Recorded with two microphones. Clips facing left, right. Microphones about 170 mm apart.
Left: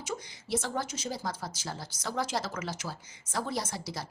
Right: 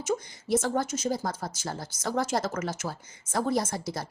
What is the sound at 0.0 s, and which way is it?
A woman's voice, 50° right (ahead or behind).